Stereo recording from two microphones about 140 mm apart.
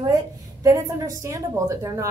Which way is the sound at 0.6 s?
20° right (ahead or behind).